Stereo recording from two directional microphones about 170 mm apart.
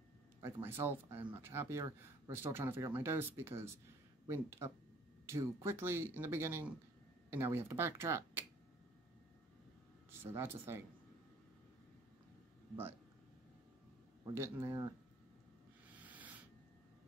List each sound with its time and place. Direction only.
0.4 s speech: 15° right (ahead or behind)
10.2 s speech: 15° right (ahead or behind)
14.2 s speech: 15° right (ahead or behind)
15.9 s a sound: 10° right (ahead or behind)